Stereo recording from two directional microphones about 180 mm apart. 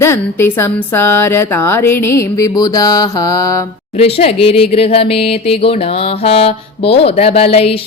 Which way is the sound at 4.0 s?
35° left (ahead or behind).